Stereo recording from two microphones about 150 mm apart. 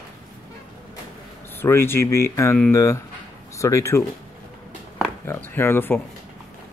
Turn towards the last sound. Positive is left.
turn(degrees=15)  # may be behind; listen again after turning